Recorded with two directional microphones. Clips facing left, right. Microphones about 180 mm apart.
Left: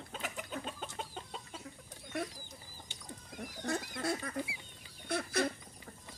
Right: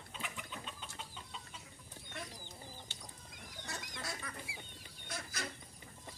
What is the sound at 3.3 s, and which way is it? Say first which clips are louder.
Chicken: left 12 dB; 55° left (ahead or behind).